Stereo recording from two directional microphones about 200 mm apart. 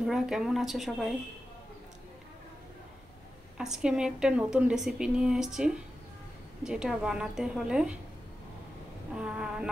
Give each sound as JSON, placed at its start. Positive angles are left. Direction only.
{"t": 0.0, "sound": "a woman's voice", "side_deg": -5}
{"t": 3.5, "sound": "a woman's voice", "side_deg": -5}
{"t": 9.1, "sound": "a woman's voice", "side_deg": -5}